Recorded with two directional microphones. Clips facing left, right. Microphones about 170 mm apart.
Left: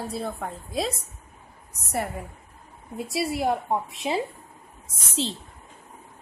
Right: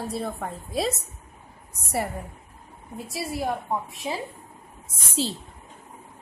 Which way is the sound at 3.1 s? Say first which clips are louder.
Left 4 dB; 25° left (ahead or behind).